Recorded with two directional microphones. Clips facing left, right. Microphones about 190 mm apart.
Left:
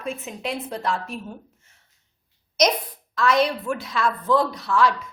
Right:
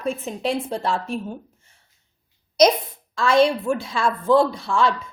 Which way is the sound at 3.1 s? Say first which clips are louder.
Right 3 dB; 30° right (ahead or behind).